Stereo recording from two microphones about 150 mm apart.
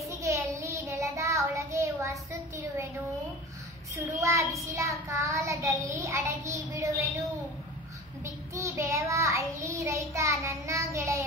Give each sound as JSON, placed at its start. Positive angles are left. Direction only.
{"t": 0.0, "sound": "child singing", "side_deg": -20}
{"t": 4.2, "sound": "child singing", "side_deg": -20}
{"t": 8.2, "sound": "child singing", "side_deg": -20}